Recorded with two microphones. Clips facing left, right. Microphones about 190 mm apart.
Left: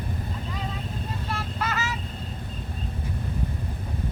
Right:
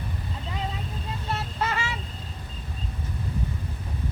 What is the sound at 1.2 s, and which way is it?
Vehicle, 25° right (ahead or behind).